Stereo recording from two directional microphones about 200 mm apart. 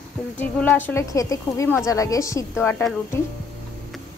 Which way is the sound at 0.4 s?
5° left (ahead or behind).